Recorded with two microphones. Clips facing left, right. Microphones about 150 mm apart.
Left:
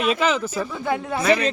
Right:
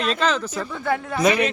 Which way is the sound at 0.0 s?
10° left (ahead or behind).